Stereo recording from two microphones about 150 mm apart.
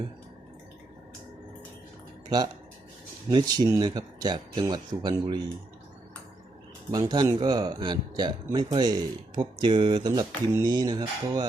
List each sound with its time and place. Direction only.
3.2 s speech: 25° right (ahead or behind)
7.1 s speech: 30° right (ahead or behind)